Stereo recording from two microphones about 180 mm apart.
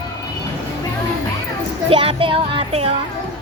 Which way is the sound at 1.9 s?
30° right (ahead or behind).